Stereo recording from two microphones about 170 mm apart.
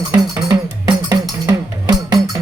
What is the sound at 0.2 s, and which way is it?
Music, 25° right (ahead or behind).